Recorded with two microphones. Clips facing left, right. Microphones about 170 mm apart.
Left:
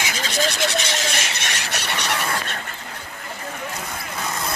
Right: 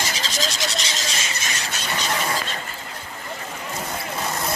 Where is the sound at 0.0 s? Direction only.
60° left (ahead or behind).